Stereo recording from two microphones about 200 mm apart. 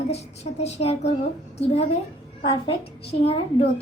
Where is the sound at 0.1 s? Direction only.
30° left (ahead or behind).